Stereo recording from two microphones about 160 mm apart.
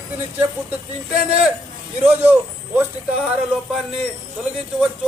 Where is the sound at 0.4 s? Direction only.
10° right (ahead or behind).